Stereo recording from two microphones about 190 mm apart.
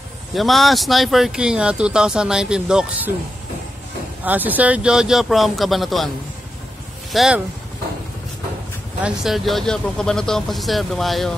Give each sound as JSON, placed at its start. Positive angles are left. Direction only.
{"t": 0.3, "sound": "speech", "side_deg": 0}
{"t": 4.2, "sound": "speech", "side_deg": -10}
{"t": 7.1, "sound": "speech", "side_deg": 0}
{"t": 9.0, "sound": "speech", "side_deg": 0}